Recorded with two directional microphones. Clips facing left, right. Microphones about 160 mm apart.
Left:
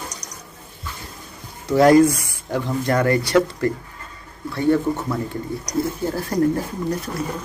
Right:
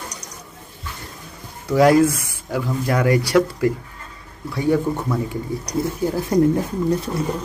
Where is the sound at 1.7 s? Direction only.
5° right (ahead or behind).